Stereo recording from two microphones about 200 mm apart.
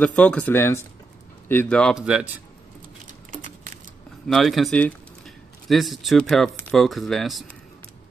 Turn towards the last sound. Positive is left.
turn(degrees=0)  # may be behind; listen again after turning